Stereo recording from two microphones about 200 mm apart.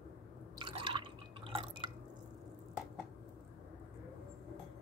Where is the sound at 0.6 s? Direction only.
25° right (ahead or behind).